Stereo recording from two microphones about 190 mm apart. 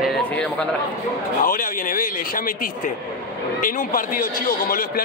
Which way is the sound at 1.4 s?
45° left (ahead or behind).